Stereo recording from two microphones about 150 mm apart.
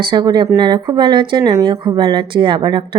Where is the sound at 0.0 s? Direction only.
30° right (ahead or behind).